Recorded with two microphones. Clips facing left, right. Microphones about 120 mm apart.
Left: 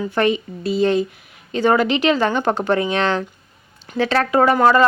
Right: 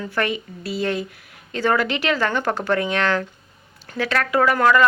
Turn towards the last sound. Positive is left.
turn(degrees=30)  # may be behind; listen again after turning